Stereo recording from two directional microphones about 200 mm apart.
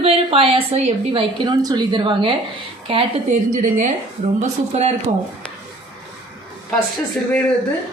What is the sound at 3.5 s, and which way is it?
Speech, 40° right (ahead or behind).